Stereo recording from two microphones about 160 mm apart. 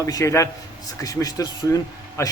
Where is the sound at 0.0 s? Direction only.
20° left (ahead or behind).